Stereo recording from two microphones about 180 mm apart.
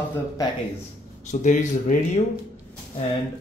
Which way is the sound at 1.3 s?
45° left (ahead or behind).